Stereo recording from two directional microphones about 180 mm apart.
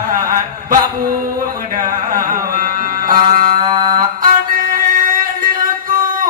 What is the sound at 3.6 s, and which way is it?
Mantra, 25° right (ahead or behind).